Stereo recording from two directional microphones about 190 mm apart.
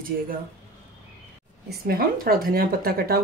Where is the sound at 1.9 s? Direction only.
50° right (ahead or behind).